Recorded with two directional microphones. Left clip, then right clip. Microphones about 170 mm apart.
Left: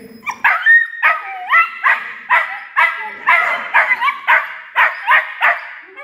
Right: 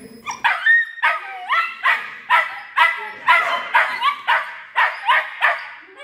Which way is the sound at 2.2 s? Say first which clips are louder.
Left 2 dB; 40° right (ahead or behind).